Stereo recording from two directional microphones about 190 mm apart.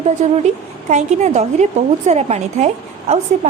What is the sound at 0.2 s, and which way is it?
A woman's voice, 35° right (ahead or behind).